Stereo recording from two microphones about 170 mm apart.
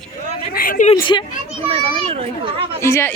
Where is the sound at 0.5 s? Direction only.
55° left (ahead or behind).